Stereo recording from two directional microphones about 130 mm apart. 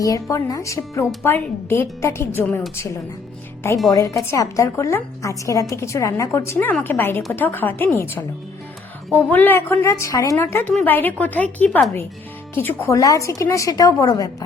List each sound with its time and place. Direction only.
0.0 s a woman's voice: 25° left (ahead or behind)
3.9 s a woman's voice: 25° left (ahead or behind)